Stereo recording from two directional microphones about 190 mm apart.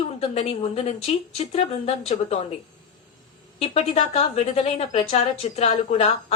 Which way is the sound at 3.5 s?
35° left (ahead or behind).